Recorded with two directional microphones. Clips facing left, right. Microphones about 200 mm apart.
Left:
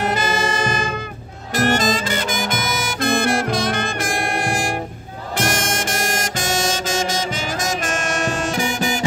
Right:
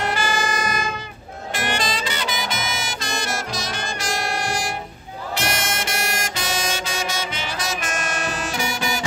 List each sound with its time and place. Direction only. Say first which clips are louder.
0.1 s music: left 3 dB; 25° left (ahead or behind)
1.5 s saxophone: left 7 dB; 45° left (ahead or behind)